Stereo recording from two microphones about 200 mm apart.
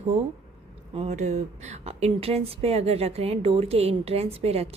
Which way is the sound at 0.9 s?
35° right (ahead or behind).